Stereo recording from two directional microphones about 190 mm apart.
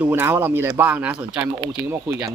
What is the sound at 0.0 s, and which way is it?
Speech, 10° right (ahead or behind).